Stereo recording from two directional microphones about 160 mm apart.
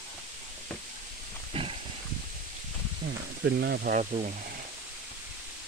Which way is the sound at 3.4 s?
90° right.